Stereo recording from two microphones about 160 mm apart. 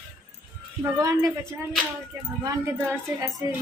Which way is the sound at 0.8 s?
20° right (ahead or behind).